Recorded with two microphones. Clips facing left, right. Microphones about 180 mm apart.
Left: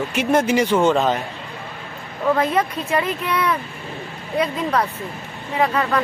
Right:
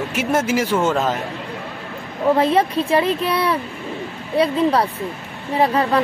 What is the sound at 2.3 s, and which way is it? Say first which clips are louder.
A woman's voice: right 3 dB; 30° right (ahead or behind).